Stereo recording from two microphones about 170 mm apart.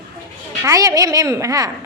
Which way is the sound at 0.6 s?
20° right (ahead or behind).